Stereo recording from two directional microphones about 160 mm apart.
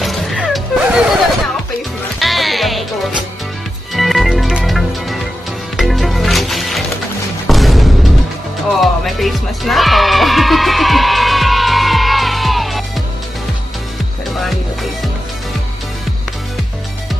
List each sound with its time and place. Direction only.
0.0 s music: centre (ahead or behind)
2.1 s music: centre (ahead or behind)
3.9 s music: centre (ahead or behind)
14.4 s music: centre (ahead or behind)